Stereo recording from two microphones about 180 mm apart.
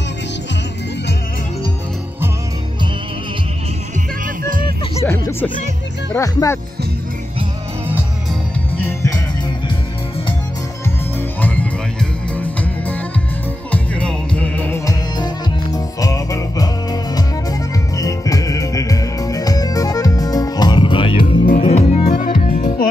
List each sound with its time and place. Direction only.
5.0 s music: 10° left (ahead or behind)
6.1 s speech: 15° left (ahead or behind)
8.7 s music: 10° left (ahead or behind)
11.4 s music: 10° left (ahead or behind)
15.1 s music: 20° left (ahead or behind); by 22.7 s 40° left (ahead or behind)